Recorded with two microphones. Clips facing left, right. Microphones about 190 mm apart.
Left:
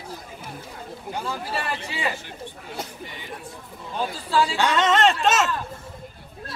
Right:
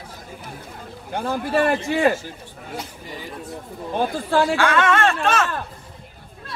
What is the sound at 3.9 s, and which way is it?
Speech, 55° right (ahead or behind).